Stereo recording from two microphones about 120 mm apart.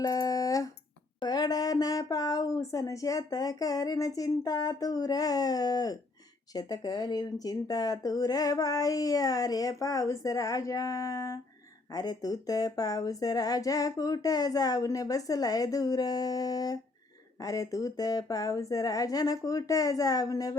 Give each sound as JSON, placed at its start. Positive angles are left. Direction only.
{"t": 0.0, "sound": "speech", "side_deg": 30}